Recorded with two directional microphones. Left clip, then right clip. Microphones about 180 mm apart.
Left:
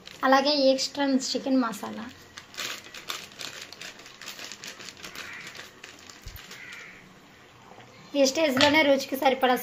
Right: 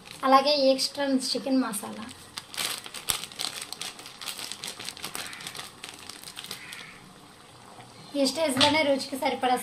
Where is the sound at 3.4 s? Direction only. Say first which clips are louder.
Right 4 dB; 45° right (ahead or behind).